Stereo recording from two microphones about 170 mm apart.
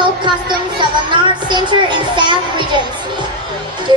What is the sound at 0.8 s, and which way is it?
Speech, 25° right (ahead or behind).